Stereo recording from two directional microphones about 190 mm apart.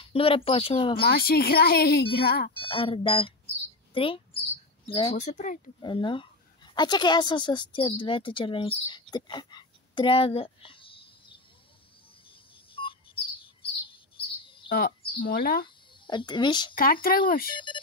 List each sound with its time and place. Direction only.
0.0 s speech: 30° left (ahead or behind)
0.9 s speech: 55° left (ahead or behind)
2.5 s speech: 25° left (ahead or behind)
3.9 s mouse: 30° left (ahead or behind)
4.8 s speech: 25° left (ahead or behind)
5.1 s speech: 40° left (ahead or behind)
5.8 s a woman's voice: 25° left (ahead or behind)
12.3 s chirp: 25° left (ahead or behind)
14.4 s bird vocalization: 25° left (ahead or behind)
14.7 s speech: 50° left (ahead or behind)
16.1 s speech: 25° left (ahead or behind)
16.7 s speech: 50° left (ahead or behind)
17.6 s speech: 25° left (ahead or behind)